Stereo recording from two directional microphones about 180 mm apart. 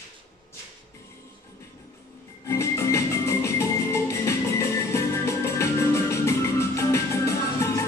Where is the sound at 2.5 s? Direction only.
15° left (ahead or behind).